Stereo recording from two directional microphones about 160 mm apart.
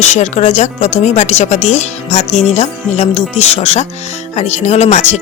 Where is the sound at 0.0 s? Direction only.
45° left (ahead or behind).